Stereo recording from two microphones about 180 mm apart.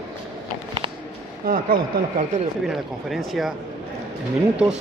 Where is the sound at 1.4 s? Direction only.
55° right (ahead or behind).